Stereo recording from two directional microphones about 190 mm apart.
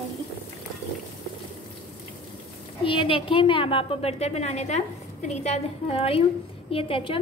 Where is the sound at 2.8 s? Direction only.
25° left (ahead or behind).